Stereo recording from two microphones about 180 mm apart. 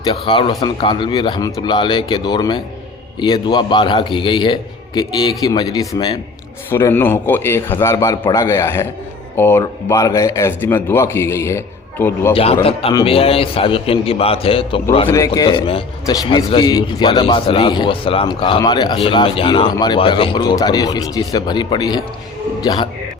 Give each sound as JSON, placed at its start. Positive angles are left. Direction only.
{"t": 0.0, "sound": "a man's voice", "side_deg": 30}
{"t": 12.3, "sound": "a man's voice", "side_deg": 30}
{"t": 15.1, "sound": "a man's voice", "side_deg": 20}